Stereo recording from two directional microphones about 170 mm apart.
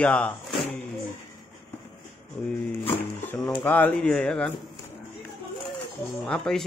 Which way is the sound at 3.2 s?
10° left (ahead or behind).